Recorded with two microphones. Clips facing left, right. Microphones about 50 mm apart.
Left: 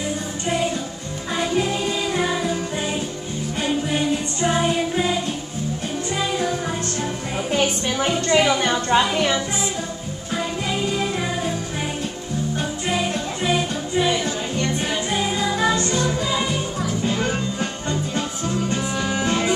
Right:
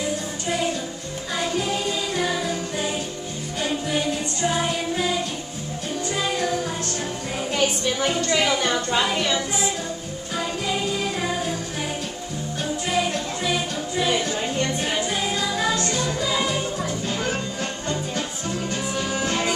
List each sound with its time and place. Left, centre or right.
1.3 s music: left
4.4 s music: left
7.5 s music: left
8.3 s speech: left
13.1 s music: left
15.6 s music: left